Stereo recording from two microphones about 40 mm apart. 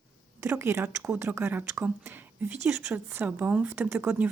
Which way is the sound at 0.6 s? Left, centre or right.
Right.